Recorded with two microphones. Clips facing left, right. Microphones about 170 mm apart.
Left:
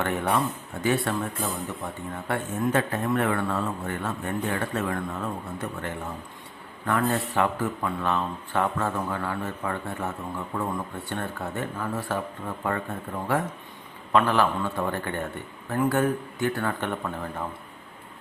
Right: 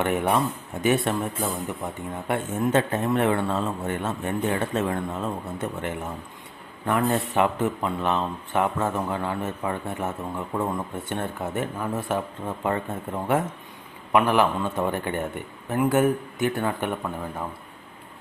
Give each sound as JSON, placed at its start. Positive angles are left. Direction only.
{"t": 0.0, "sound": "a man's voice", "side_deg": -20}